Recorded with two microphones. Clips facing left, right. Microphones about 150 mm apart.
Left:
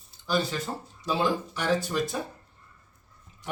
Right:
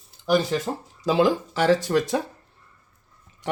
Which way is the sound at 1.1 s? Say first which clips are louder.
Right 7 dB; 90° right.